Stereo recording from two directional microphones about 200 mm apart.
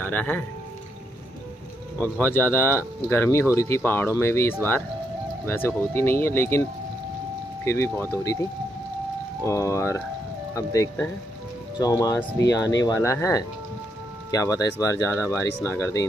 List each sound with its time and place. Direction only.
0.0 s speech: 10° left (ahead or behind)
2.0 s speech: 10° left (ahead or behind)
7.6 s speech: 15° left (ahead or behind)
9.4 s speech: 15° left (ahead or behind)